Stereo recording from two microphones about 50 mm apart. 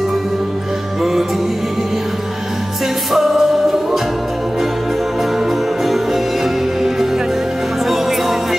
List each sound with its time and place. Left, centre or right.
3.1 s music: centre
5.9 s music: centre